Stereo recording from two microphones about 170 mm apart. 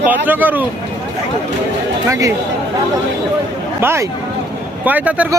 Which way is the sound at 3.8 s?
15° right (ahead or behind).